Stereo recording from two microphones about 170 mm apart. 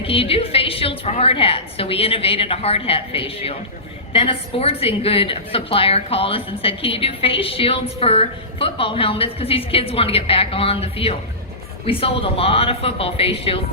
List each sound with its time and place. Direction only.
0.0 s a woman's voice: 35° left (ahead or behind)